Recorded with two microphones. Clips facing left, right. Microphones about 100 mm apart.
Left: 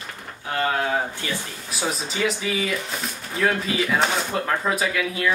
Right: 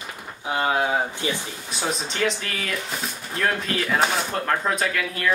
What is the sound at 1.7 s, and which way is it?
Speech, 5° left (ahead or behind).